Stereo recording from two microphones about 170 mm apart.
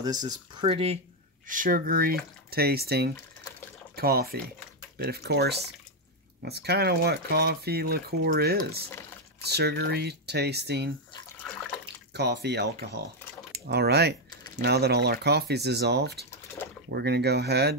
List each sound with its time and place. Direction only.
0.0 s speech: 25° right (ahead or behind)
1.5 s speech: 55° right (ahead or behind); by 10.9 s 75° right (ahead or behind)
11.4 s water: 5° left (ahead or behind)
12.1 s speech: 80° right